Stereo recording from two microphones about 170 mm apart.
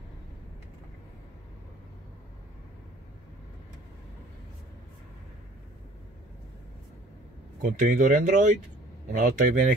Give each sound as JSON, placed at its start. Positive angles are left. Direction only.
{"t": 7.6, "sound": "speech", "side_deg": -50}